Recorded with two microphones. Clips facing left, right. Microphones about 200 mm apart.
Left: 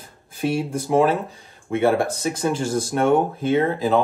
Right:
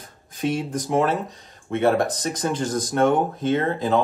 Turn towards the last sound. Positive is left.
turn(degrees=10)  # may be behind; listen again after turning